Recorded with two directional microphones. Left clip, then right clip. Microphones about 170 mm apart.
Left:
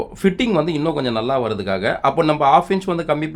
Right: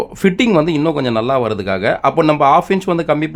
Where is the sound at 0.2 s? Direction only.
40° right (ahead or behind).